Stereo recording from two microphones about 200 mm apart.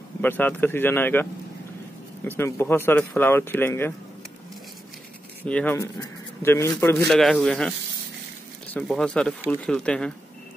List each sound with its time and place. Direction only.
0.2 s speech: 10° left (ahead or behind)
2.2 s speech: 10° left (ahead or behind)
5.4 s speech: 5° left (ahead or behind)
7.1 s speech: centre (ahead or behind)